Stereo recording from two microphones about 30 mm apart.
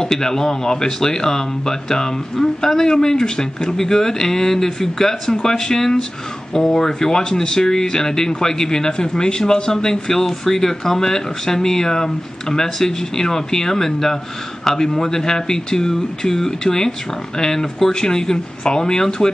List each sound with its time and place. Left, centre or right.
0.0 s speech: centre